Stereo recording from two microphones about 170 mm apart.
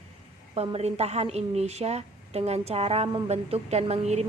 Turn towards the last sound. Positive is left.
turn(degrees=-40)  # may be behind; listen again after turning